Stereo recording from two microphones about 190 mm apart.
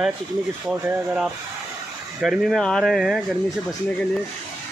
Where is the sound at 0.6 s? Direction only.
5° right (ahead or behind).